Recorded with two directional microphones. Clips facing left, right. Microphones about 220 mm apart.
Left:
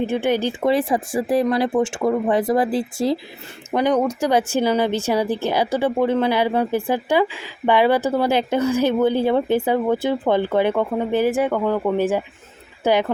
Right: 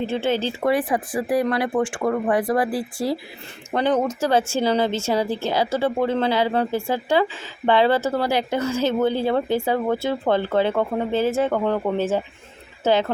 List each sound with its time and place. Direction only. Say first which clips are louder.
0.0 s speech: left 3 dB; 15° left (ahead or behind)
2.0 s a woman's voice: left 2 dB; 10° left (ahead or behind)
2.3 s a woman's voice: left 2 dB; 25° left (ahead or behind)